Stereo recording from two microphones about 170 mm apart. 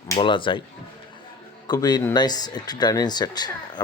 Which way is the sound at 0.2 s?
30° left (ahead or behind).